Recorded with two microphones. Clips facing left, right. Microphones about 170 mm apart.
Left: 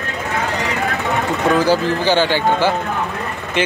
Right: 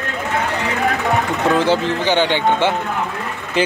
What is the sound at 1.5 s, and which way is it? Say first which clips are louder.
Speech: left 1 dB; 25° right (ahead or behind).